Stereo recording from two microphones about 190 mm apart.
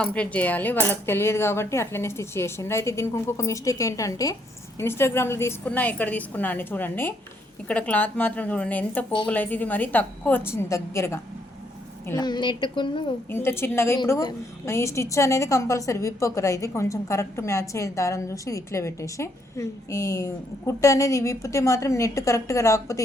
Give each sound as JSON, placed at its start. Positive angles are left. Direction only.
{"t": 0.0, "sound": "a woman's voice", "side_deg": 5}
{"t": 13.3, "sound": "a woman's voice", "side_deg": 10}